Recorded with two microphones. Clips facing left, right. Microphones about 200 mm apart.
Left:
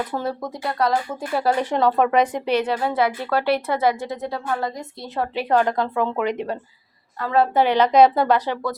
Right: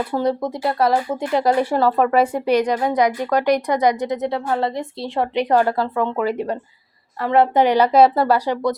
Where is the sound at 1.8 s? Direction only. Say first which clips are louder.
Left 1 dB; centre (ahead or behind); by 5.3 s 30° right (ahead or behind).